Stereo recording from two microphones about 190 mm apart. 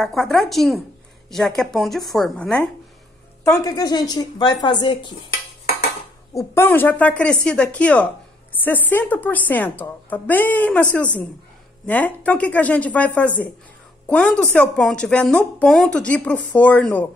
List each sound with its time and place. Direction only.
0.0 s a woman's voice: centre (ahead or behind)
3.4 s a woman's voice: 20° left (ahead or behind)
6.3 s a woman's voice: 10° left (ahead or behind)